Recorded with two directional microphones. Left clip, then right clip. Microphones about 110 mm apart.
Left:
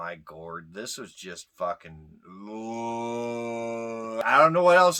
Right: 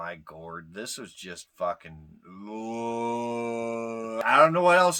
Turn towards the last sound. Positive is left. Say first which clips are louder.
# left 2 dB
turn(degrees=15)  # may be behind; listen again after turning